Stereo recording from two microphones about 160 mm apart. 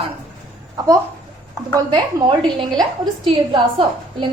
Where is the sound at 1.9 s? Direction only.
25° right (ahead or behind).